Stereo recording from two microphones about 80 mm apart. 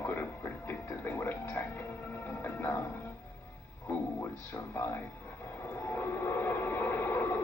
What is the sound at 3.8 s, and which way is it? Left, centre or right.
Music, left.